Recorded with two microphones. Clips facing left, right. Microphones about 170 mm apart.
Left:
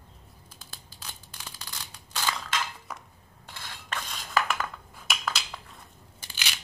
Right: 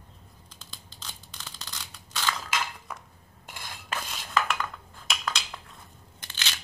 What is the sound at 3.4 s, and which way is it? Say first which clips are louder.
Filing: right 1 dB; 15° right (ahead or behind).